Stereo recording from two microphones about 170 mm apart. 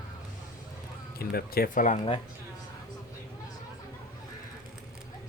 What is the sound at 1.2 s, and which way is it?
Speech, 65° left (ahead or behind).